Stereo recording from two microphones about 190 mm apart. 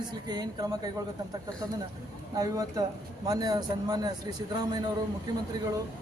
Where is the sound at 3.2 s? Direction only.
20° right (ahead or behind).